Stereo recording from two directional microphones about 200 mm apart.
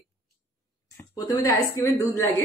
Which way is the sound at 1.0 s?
15° left (ahead or behind).